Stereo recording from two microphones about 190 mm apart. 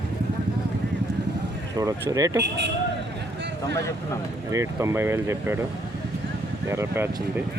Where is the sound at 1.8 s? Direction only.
20° right (ahead or behind).